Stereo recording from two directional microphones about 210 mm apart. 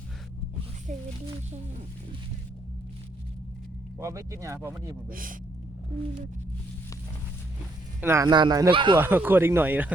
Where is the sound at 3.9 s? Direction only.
15° right (ahead or behind).